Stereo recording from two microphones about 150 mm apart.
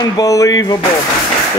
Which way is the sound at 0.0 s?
25° left (ahead or behind).